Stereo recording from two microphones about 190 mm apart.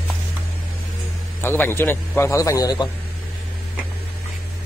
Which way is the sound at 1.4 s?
10° left (ahead or behind).